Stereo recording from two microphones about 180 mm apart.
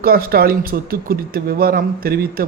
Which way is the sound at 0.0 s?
55° right (ahead or behind).